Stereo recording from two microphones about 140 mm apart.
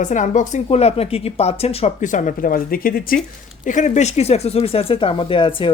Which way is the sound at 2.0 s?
65° left (ahead or behind).